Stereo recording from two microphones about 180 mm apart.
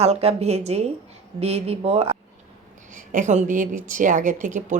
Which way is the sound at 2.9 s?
45° right (ahead or behind).